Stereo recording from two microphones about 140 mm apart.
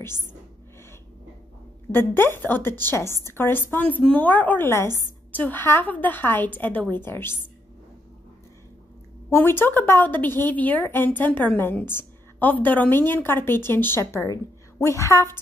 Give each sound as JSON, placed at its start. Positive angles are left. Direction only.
{"t": 0.0, "sound": "a woman's voice", "side_deg": 15}
{"t": 1.9, "sound": "a woman's voice", "side_deg": 15}
{"t": 9.3, "sound": "a woman's voice", "side_deg": 15}